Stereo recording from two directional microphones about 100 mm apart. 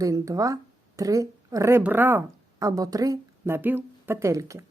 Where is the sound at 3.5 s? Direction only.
20° right (ahead or behind).